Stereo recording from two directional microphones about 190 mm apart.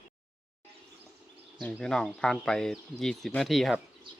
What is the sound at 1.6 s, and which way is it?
Speech, 5° left (ahead or behind).